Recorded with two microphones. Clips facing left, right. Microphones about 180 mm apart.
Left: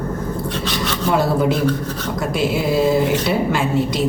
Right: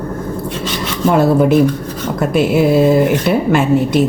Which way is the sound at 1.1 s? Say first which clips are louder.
Right 7 dB; 55° right (ahead or behind).